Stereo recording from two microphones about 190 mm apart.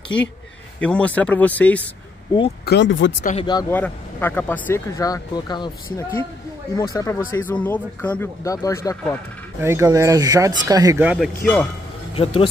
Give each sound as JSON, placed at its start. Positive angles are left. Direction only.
{"t": 0.7, "sound": "speech", "side_deg": 5}
{"t": 2.6, "sound": "speech", "side_deg": 65}
{"t": 3.2, "sound": "speech", "side_deg": 40}
{"t": 3.7, "sound": "speech", "side_deg": 10}
{"t": 6.7, "sound": "speech", "side_deg": 20}
{"t": 9.6, "sound": "speech", "side_deg": -15}
{"t": 11.0, "sound": "speech", "side_deg": -5}
{"t": 12.2, "sound": "speech", "side_deg": 30}